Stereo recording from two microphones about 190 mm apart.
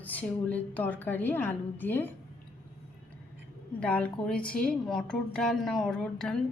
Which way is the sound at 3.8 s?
5° left (ahead or behind).